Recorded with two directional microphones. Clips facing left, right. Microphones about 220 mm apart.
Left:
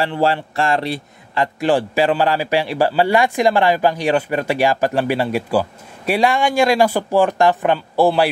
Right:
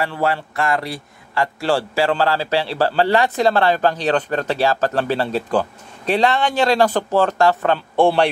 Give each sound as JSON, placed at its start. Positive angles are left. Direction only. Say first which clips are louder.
{"t": 0.0, "sound": "speech", "louder": "left 3 dB", "side_deg": 25}
{"t": 7.9, "sound": "a man's voice", "louder": "even", "side_deg": 5}